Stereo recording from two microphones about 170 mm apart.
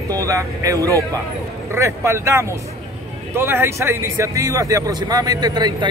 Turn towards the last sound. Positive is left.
turn(degrees=-25)  # may be behind; listen again after turning